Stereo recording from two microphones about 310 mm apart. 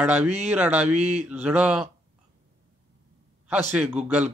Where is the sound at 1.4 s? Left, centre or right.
Centre.